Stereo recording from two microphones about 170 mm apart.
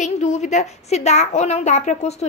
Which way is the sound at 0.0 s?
40° left (ahead or behind).